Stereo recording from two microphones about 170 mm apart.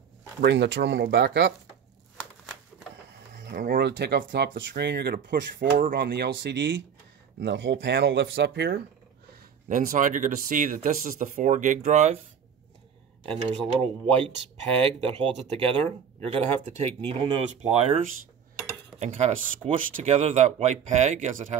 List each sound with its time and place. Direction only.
0.4 s speech: 90° right
3.5 s speech: 60° right (ahead or behind)
5.9 s speech: 80° right
9.7 s speech: 50° right (ahead or behind)
13.3 s speech: 35° right (ahead or behind)
17.6 s speech: 40° right (ahead or behind)